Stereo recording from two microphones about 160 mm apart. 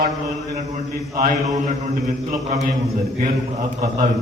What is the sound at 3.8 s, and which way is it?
Speech, 70° right (ahead or behind).